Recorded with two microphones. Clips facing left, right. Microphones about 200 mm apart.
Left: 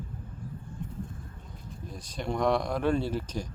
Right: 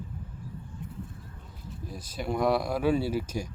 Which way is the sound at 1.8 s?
5° right (ahead or behind).